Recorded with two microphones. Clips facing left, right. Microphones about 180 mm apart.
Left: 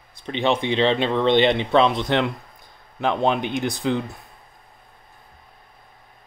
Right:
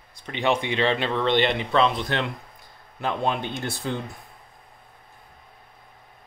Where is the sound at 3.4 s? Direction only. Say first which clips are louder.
Left 6 dB; 15° left (ahead or behind).